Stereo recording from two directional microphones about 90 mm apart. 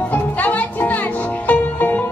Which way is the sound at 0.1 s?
20° left (ahead or behind).